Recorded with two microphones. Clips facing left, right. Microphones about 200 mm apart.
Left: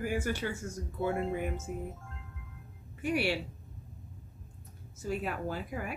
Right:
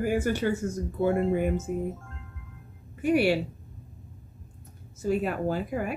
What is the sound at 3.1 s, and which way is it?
Speech, 50° right (ahead or behind).